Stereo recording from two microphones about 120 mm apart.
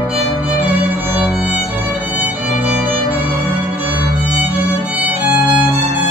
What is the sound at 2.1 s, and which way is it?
Violin, 15° right (ahead or behind).